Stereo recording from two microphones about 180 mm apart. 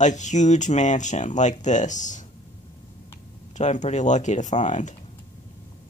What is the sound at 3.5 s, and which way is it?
Speech, 40° left (ahead or behind).